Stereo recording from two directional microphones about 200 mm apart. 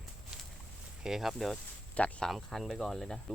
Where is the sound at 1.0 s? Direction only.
Centre (ahead or behind).